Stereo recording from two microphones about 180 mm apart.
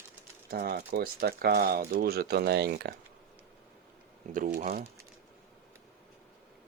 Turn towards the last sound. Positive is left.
turn(degrees=-40)  # may be behind; listen again after turning